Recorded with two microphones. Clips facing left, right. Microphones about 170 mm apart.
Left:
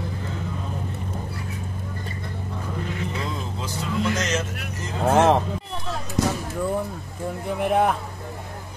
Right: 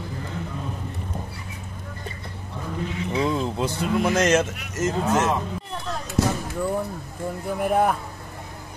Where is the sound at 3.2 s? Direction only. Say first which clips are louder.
Right 7 dB; 65° right (ahead or behind).